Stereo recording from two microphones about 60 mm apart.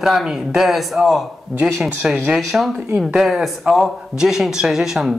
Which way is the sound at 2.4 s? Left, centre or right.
Centre.